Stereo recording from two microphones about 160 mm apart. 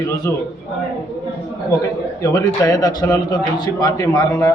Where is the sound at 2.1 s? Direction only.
20° left (ahead or behind).